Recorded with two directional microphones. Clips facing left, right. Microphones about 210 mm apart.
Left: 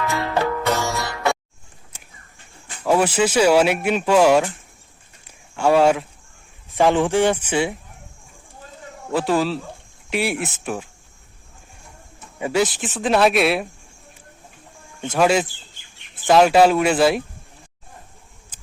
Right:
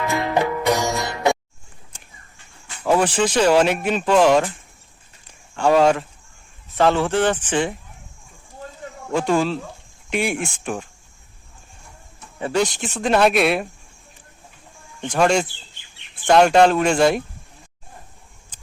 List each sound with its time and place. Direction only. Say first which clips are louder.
0.0 s music: right 1 dB; 15° right (ahead or behind)
2.8 s speech: even; 10° left (ahead or behind)
5.5 s speech: even; 10° left (ahead or behind)
9.1 s speech: even; 5° left (ahead or behind)
12.4 s speech: left 1 dB; 10° left (ahead or behind)
15.0 s speech: even; 5° left (ahead or behind)